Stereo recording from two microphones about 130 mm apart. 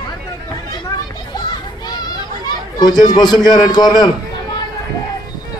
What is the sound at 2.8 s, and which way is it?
A man's voice, 35° left (ahead or behind).